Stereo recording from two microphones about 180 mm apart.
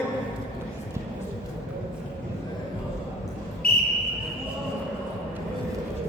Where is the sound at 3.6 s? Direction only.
55° left (ahead or behind).